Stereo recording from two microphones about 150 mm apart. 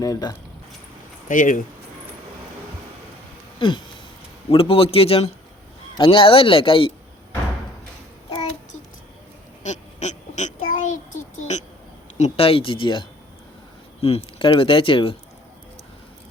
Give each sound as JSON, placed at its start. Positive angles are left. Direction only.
{"t": 0.0, "sound": "speech", "side_deg": 25}
{"t": 1.3, "sound": "speech", "side_deg": 60}
{"t": 4.4, "sound": "speech", "side_deg": 40}
{"t": 9.6, "sound": "child singing", "side_deg": 50}
{"t": 12.1, "sound": "speech", "side_deg": 45}